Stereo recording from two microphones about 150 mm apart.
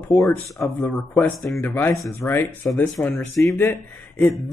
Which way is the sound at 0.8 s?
5° left (ahead or behind).